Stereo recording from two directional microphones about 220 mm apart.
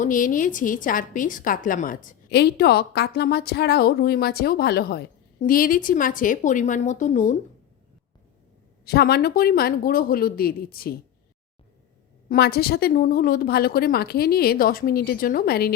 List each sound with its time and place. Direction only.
0.0 s a woman's voice: 35° left (ahead or behind)
8.8 s a woman's voice: 45° left (ahead or behind)
12.3 s a woman's voice: 45° left (ahead or behind)